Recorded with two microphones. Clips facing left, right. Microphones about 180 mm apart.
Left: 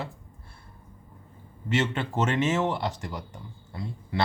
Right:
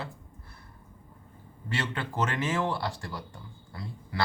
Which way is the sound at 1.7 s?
25° left (ahead or behind).